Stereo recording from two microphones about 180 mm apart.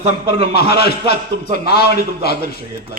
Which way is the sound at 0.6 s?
60° left (ahead or behind).